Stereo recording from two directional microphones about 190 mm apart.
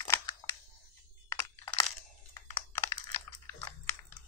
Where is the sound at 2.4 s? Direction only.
15° left (ahead or behind).